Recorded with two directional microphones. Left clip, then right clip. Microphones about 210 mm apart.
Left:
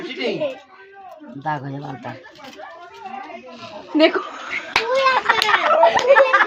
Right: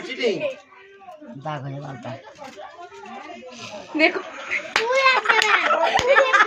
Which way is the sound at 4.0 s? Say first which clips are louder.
Left 3 dB; 5° left (ahead or behind).